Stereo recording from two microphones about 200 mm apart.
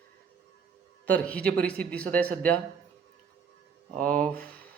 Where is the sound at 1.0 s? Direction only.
10° left (ahead or behind).